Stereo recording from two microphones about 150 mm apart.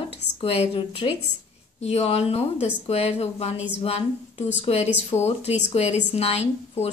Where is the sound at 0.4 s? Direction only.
40° left (ahead or behind).